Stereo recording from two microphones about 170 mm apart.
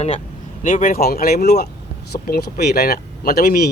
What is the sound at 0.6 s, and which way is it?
Speech, 50° left (ahead or behind).